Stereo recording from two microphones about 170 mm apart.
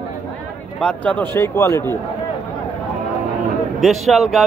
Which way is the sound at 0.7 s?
5° left (ahead or behind).